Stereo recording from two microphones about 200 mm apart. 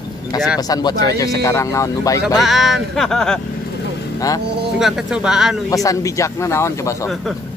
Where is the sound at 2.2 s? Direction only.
Centre (ahead or behind).